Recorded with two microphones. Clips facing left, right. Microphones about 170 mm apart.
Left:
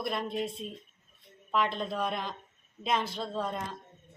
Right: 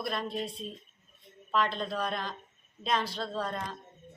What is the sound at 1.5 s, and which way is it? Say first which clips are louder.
A woman's voice: even; 15° left (ahead or behind).